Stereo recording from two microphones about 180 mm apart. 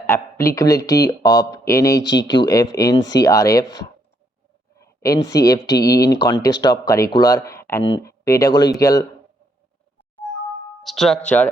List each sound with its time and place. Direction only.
0.1 s speech: 15° left (ahead or behind)
10.8 s speech: centre (ahead or behind)